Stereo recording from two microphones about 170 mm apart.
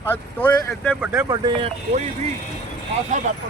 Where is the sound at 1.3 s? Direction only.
30° right (ahead or behind).